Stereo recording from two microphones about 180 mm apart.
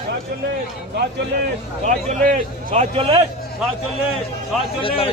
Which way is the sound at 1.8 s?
45° right (ahead or behind).